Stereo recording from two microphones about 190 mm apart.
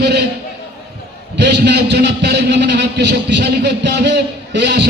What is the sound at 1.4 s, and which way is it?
A man's voice, 65° right (ahead or behind).